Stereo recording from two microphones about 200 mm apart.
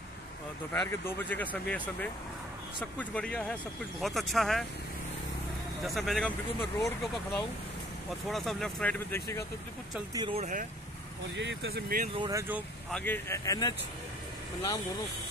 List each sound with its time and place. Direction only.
0.7 s speech: 10° left (ahead or behind)
5.9 s speech: centre (ahead or behind)
8.3 s speech: centre (ahead or behind)
10.1 s speech: 25° right (ahead or behind)
11.3 s speech: 55° right (ahead or behind)
12.1 s speech: 20° right (ahead or behind)
12.9 s speech: 10° left (ahead or behind)